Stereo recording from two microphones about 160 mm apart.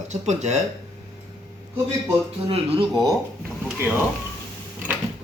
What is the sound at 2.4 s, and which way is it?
Speech, 30° right (ahead or behind).